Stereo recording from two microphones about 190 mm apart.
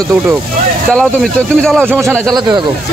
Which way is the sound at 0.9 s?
Centre (ahead or behind).